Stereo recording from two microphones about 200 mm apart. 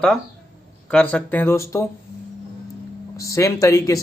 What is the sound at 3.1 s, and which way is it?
Speech, 15° left (ahead or behind).